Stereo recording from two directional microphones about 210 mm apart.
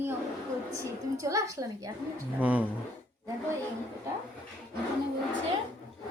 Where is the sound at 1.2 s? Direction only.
15° right (ahead or behind).